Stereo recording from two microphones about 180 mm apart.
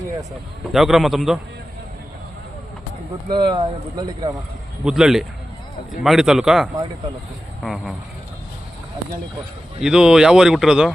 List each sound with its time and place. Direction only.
0.7 s speech: centre (ahead or behind)
3.2 s speech: 25° right (ahead or behind)
4.9 s speech: 5° right (ahead or behind)
9.8 s speech: 5° right (ahead or behind)